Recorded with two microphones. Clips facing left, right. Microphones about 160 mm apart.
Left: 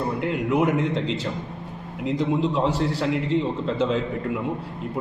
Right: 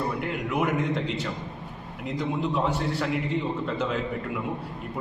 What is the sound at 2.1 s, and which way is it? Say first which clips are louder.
A man's voice: left 4 dB; 25° left (ahead or behind).